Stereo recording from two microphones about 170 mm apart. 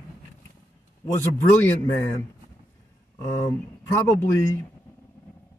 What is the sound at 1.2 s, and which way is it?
Speech, 15° left (ahead or behind).